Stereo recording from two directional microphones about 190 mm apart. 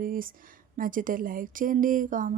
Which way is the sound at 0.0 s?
45° right (ahead or behind).